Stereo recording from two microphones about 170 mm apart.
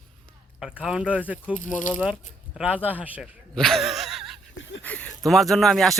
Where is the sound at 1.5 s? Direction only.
50° left (ahead or behind).